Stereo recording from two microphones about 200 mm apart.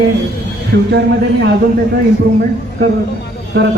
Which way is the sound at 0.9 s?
60° right (ahead or behind).